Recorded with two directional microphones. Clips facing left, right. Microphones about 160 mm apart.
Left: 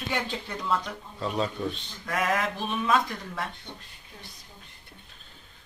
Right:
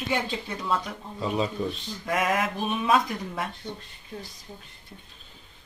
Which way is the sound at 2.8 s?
15° right (ahead or behind).